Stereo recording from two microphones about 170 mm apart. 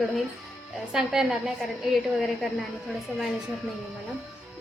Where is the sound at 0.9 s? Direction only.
5° right (ahead or behind).